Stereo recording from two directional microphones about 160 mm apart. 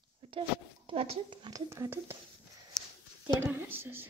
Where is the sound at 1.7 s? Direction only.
15° right (ahead or behind).